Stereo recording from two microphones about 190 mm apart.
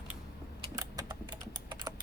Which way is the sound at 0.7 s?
20° right (ahead or behind).